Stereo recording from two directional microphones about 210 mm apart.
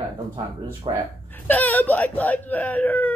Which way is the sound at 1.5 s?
10° left (ahead or behind).